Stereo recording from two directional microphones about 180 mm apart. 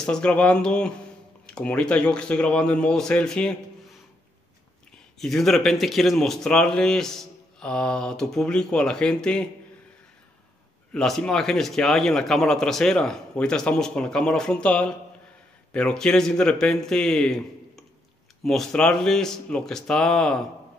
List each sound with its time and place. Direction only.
0.0 s speech: 5° left (ahead or behind)
5.2 s speech: centre (ahead or behind)
10.9 s speech: 5° left (ahead or behind)